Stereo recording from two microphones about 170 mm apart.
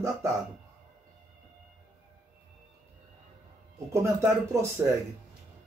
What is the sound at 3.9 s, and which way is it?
Speech, 15° right (ahead or behind).